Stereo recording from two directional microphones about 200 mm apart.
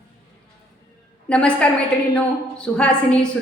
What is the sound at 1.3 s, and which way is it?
A woman's voice, 5° left (ahead or behind).